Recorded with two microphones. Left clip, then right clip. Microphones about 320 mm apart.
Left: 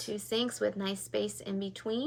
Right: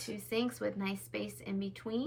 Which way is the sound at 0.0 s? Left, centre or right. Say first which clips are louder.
Left 3 dB; centre.